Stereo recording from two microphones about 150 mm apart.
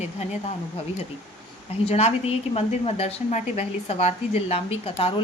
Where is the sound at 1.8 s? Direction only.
45° left (ahead or behind).